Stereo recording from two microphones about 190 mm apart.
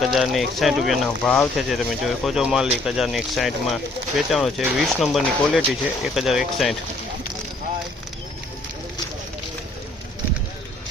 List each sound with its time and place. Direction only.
0.0 s speech: centre (ahead or behind)